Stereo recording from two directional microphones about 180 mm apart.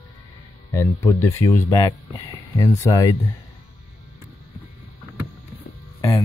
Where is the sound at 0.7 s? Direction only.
15° left (ahead or behind).